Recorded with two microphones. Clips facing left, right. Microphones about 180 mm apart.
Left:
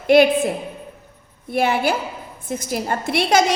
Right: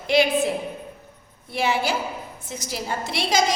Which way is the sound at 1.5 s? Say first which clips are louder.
Left 4 dB; 55° left (ahead or behind).